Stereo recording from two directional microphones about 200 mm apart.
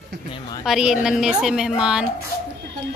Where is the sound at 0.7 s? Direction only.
5° right (ahead or behind).